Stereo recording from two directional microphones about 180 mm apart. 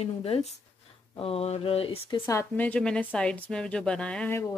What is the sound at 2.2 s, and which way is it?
A woman's voice, 10° left (ahead or behind).